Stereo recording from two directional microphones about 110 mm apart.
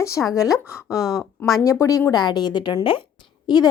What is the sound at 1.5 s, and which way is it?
Speech, 30° left (ahead or behind).